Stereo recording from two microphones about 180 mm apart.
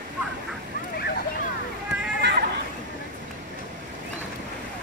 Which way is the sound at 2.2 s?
70° right (ahead or behind).